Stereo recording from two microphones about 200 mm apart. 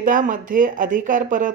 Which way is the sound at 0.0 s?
40° right (ahead or behind).